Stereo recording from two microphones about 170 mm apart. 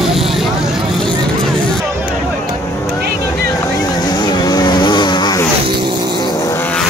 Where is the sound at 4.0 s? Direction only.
25° left (ahead or behind).